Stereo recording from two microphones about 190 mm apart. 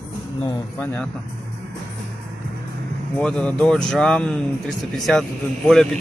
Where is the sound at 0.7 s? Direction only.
10° left (ahead or behind).